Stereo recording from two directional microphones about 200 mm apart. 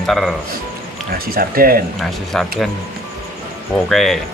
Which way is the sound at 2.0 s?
5° left (ahead or behind).